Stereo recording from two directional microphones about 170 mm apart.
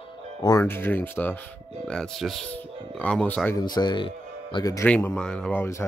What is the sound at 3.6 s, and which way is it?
Speech, 25° left (ahead or behind).